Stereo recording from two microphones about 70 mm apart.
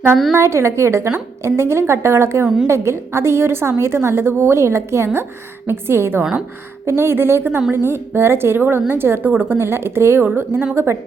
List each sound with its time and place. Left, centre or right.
0.3 s a woman's voice: right